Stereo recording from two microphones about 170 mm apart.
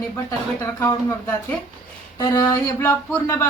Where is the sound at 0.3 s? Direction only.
20° left (ahead or behind).